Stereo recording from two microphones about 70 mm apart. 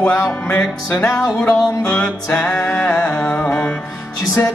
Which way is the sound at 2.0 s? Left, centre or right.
Centre.